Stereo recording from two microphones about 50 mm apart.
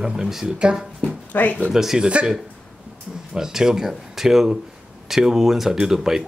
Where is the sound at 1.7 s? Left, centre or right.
Centre.